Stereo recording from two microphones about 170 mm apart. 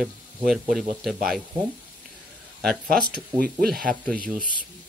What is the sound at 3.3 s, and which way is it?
Speech, 60° right (ahead or behind).